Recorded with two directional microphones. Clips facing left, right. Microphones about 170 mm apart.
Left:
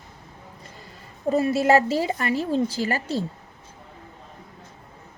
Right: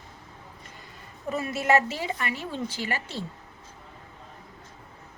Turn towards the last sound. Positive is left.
turn(degrees=40)  # may be behind; listen again after turning